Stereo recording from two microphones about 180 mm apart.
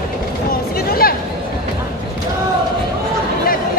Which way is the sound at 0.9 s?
55° left (ahead or behind).